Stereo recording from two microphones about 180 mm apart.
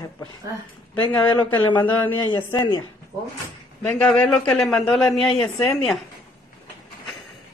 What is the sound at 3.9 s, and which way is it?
A woman's voice, 5° left (ahead or behind).